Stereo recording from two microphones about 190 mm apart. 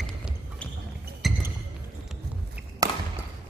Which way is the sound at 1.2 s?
Centre (ahead or behind).